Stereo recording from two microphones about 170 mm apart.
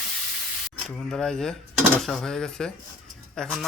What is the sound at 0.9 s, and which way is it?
Speech, 5° left (ahead or behind).